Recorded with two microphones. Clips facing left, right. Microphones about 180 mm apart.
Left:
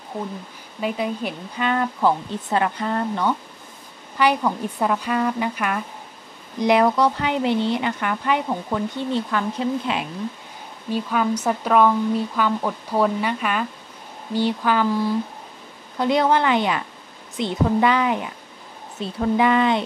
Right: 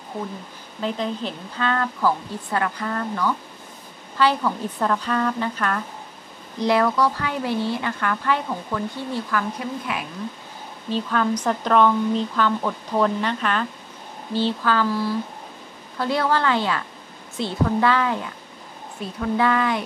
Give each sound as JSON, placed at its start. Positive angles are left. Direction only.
{"t": 0.7, "sound": "speech", "side_deg": 10}
{"t": 10.9, "sound": "speech", "side_deg": 10}